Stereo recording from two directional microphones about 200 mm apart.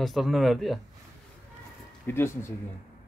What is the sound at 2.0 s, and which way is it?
Speech, 10° left (ahead or behind).